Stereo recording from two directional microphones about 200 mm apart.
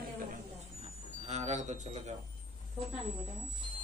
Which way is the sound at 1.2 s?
35° right (ahead or behind).